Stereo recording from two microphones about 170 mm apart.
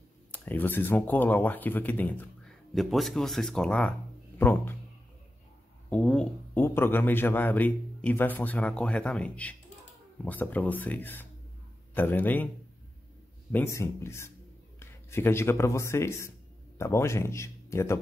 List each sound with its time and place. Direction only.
0.3 s speech: 10° left (ahead or behind)
5.9 s speech: 5° left (ahead or behind)
13.5 s speech: 15° left (ahead or behind)